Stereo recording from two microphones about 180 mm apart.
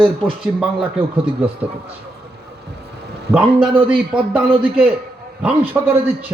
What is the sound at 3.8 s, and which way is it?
Speech, 5° right (ahead or behind).